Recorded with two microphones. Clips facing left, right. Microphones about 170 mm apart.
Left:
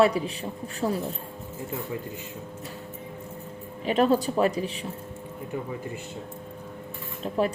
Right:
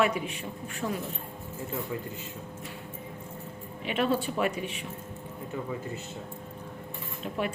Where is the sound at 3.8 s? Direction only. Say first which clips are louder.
Left 6 dB; 40° left (ahead or behind).